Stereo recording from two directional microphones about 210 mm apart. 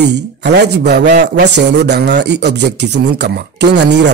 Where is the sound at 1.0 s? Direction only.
35° right (ahead or behind).